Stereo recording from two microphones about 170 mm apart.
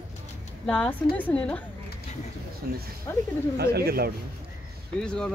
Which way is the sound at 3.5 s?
65° right (ahead or behind).